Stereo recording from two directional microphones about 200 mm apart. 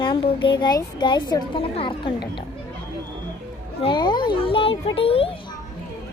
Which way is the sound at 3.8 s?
25° left (ahead or behind).